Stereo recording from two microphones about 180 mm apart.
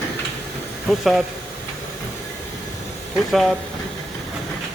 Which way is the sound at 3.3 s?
Centre (ahead or behind).